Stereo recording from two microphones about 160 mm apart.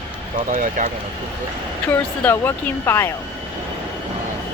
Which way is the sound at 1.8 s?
15° left (ahead or behind).